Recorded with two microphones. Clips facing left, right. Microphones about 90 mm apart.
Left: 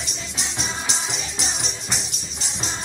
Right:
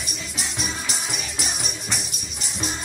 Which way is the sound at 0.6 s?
25° left (ahead or behind).